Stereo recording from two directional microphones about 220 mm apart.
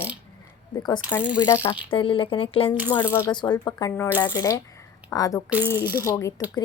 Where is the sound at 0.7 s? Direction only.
20° left (ahead or behind).